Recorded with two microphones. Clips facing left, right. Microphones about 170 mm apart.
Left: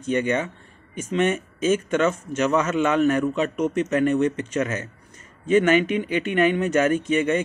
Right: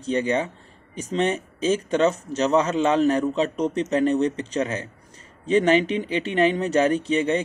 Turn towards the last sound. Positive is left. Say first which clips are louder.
# left 1 dB
turn(degrees=-30)  # may be behind; listen again after turning